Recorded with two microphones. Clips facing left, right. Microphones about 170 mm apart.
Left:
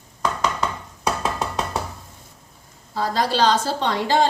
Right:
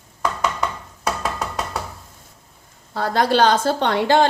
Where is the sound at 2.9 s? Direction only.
60° right (ahead or behind).